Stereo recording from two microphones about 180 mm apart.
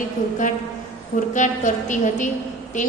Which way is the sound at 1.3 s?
45° left (ahead or behind).